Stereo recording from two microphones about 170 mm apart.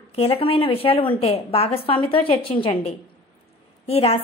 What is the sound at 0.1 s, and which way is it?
A woman's voice, 35° left (ahead or behind).